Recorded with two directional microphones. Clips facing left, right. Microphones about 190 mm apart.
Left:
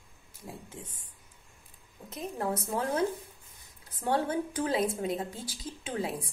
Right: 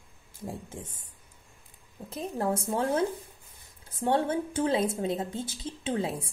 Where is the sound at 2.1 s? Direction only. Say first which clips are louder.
Right 3 dB; 30° right (ahead or behind).